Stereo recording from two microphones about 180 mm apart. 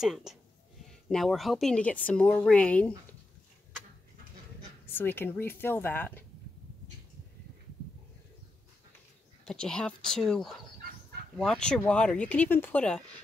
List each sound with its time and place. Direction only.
0.0 s speech: centre (ahead or behind)
4.8 s speech: 10° left (ahead or behind)
9.4 s speech: 5° left (ahead or behind)